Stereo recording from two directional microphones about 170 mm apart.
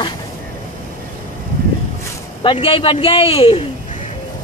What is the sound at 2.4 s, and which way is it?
A man's voice, 30° left (ahead or behind).